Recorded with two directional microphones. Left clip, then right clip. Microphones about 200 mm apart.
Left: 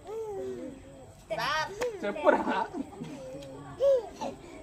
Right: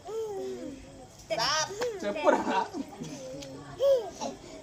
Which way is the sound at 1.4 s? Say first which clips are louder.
Right 1 dB; centre (ahead or behind).